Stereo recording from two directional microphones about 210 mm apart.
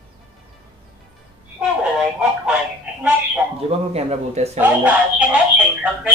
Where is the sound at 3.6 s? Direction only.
30° right (ahead or behind).